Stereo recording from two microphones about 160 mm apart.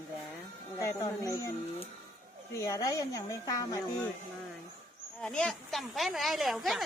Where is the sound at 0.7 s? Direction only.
20° left (ahead or behind).